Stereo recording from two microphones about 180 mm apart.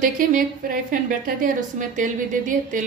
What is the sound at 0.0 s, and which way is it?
A woman's voice, 50° right (ahead or behind).